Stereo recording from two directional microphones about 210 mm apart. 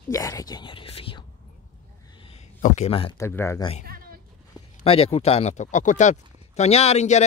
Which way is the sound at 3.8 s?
45° right (ahead or behind).